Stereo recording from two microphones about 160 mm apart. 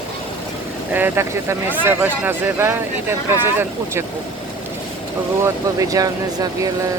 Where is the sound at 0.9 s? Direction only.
15° right (ahead or behind).